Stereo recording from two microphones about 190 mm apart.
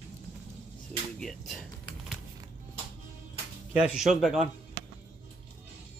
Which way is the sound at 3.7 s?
5° right (ahead or behind).